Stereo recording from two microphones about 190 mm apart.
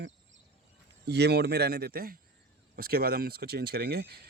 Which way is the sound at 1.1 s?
60° right (ahead or behind).